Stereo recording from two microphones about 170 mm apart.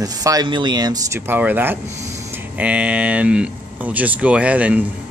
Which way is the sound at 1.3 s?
10° right (ahead or behind).